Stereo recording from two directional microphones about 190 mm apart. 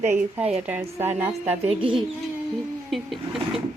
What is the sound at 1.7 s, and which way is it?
Speech, 25° right (ahead or behind).